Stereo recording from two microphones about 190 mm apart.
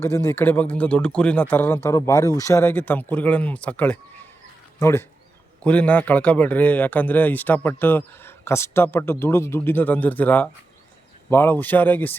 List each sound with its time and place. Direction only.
0.0 s speech: 15° left (ahead or behind)